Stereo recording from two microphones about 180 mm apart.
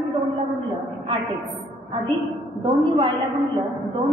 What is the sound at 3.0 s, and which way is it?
A woman's voice, 30° right (ahead or behind).